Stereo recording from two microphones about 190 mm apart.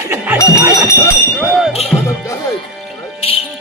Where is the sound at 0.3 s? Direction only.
15° left (ahead or behind).